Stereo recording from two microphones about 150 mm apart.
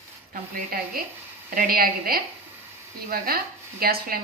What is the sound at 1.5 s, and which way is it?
Speech, 75° right (ahead or behind).